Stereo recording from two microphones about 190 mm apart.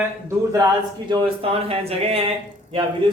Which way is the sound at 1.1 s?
25° right (ahead or behind).